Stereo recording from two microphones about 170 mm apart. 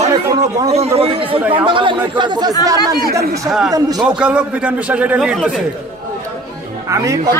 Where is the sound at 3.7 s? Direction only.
20° right (ahead or behind).